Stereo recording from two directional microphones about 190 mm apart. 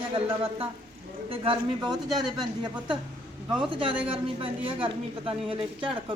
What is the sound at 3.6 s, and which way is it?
A woman's voice, 30° right (ahead or behind).